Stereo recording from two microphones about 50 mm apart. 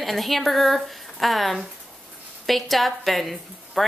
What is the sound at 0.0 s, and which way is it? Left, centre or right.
A woman's voice, centre.